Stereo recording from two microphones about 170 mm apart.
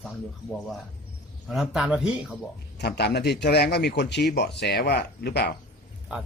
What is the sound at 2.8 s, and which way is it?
A man's voice, 75° left (ahead or behind).